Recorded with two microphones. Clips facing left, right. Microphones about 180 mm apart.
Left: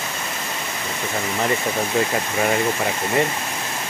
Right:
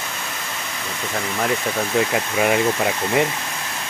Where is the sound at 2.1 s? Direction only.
10° right (ahead or behind).